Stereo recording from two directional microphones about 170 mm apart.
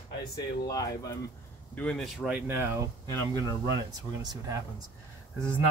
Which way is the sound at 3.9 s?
25° right (ahead or behind).